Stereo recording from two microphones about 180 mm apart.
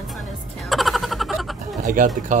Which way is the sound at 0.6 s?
Centre (ahead or behind).